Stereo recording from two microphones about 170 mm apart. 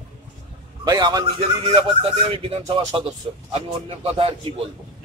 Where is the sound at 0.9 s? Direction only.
25° right (ahead or behind).